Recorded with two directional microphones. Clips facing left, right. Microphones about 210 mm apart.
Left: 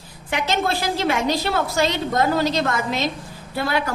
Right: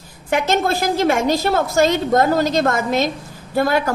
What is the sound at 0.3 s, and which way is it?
A woman's voice, 45° right (ahead or behind).